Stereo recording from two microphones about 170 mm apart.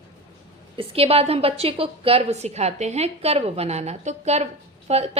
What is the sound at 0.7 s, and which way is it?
A woman's voice, 35° right (ahead or behind).